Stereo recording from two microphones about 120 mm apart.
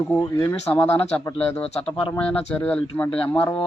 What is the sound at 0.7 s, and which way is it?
Speech, 15° left (ahead or behind).